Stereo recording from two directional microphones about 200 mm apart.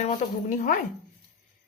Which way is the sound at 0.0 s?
35° left (ahead or behind).